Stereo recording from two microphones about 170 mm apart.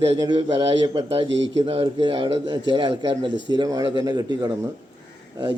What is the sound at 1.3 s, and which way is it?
Speech, 90° right.